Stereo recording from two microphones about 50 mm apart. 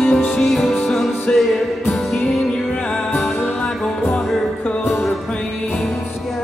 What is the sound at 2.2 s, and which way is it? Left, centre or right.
Music, centre.